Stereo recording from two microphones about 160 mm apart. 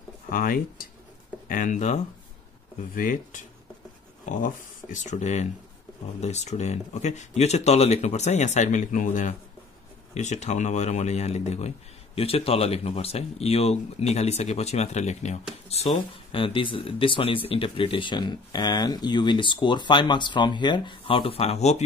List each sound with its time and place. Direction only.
0.3 s speech: 65° left (ahead or behind)
2.9 s speech: 60° left (ahead or behind)
4.9 s speech: 45° left (ahead or behind)